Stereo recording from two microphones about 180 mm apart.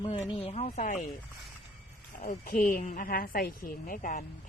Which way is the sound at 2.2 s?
50° left (ahead or behind).